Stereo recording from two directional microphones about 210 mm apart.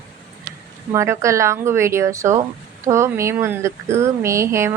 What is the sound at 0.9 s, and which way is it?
Speech, 15° right (ahead or behind).